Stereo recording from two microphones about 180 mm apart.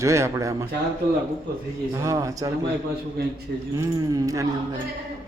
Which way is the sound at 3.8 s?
20° right (ahead or behind).